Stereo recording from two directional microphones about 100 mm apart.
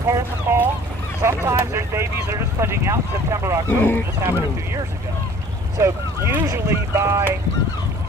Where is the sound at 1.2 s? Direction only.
25° right (ahead or behind).